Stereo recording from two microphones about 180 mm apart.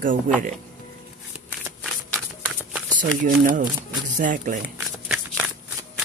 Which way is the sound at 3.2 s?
45° right (ahead or behind).